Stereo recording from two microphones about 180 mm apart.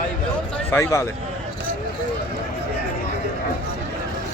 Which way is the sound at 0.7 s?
15° left (ahead or behind).